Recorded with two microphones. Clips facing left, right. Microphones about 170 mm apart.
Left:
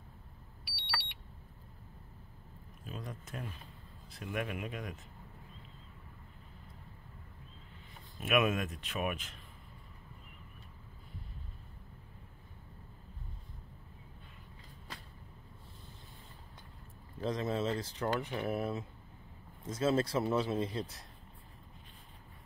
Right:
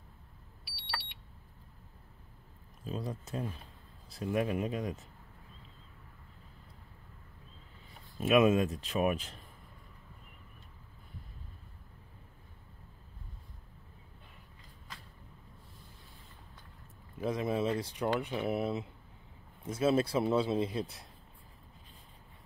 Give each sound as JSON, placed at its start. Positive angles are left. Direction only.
{"t": 2.8, "sound": "speech", "side_deg": -30}
{"t": 8.2, "sound": "speech", "side_deg": -30}
{"t": 17.2, "sound": "speech", "side_deg": -10}